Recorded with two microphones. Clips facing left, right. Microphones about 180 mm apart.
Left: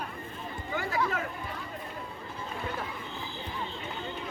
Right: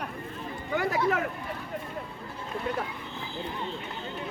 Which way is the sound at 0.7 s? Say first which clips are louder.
Right 6 dB; 65° right (ahead or behind).